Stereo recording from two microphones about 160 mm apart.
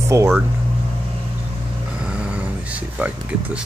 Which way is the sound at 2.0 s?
5° right (ahead or behind).